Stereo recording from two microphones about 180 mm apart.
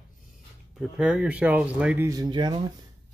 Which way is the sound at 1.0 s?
5° right (ahead or behind).